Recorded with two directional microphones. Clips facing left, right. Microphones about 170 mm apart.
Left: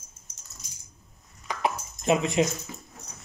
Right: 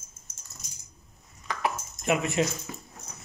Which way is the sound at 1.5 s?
20° left (ahead or behind).